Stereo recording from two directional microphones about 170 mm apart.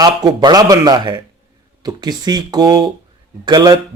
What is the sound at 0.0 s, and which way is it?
A man's voice, 25° right (ahead or behind).